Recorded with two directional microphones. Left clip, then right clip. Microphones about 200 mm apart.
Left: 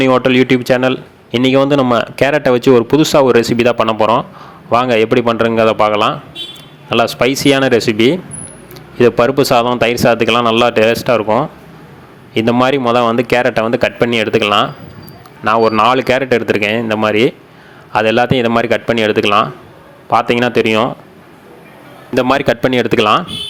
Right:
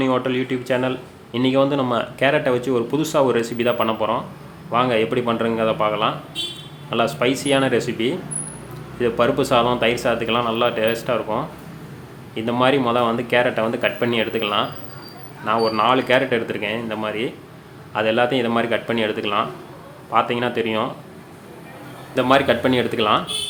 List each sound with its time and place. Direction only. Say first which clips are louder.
0.0 s a man's voice: left 10 dB; 40° left (ahead or behind)
22.1 s a man's voice: left 4 dB; 45° left (ahead or behind)